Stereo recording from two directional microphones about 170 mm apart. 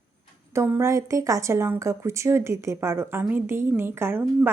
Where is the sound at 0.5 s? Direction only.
15° right (ahead or behind).